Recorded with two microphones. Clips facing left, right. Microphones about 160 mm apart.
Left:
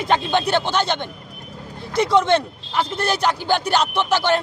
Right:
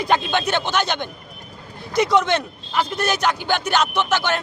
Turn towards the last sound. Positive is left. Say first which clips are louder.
# left 2 dB
turn(degrees=35)  # may be behind; listen again after turning